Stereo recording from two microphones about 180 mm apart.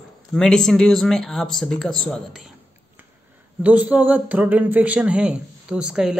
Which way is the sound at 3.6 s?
10° right (ahead or behind).